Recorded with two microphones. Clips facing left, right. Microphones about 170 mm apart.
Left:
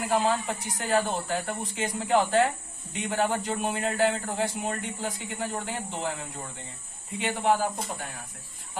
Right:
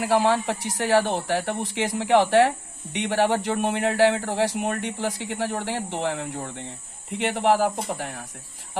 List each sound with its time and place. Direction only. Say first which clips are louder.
0.0 s a man's voice: right 5 dB; 70° right (ahead or behind)